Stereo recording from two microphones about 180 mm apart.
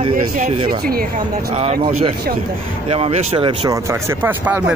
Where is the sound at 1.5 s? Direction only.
35° right (ahead or behind).